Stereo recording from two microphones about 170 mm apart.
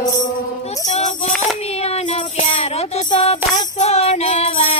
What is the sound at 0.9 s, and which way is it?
Music, 45° left (ahead or behind).